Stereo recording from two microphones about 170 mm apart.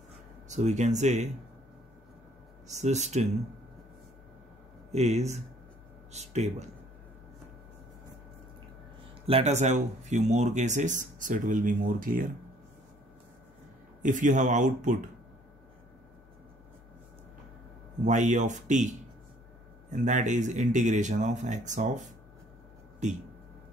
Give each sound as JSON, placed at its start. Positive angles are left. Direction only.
{"t": 0.5, "sound": "speech", "side_deg": -45}
{"t": 2.7, "sound": "speech", "side_deg": -40}
{"t": 4.9, "sound": "speech", "side_deg": -40}
{"t": 9.2, "sound": "speech", "side_deg": -40}
{"t": 14.0, "sound": "speech", "side_deg": -45}
{"t": 18.0, "sound": "speech", "side_deg": -45}